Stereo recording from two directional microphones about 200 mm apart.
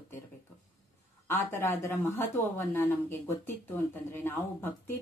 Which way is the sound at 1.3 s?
10° left (ahead or behind).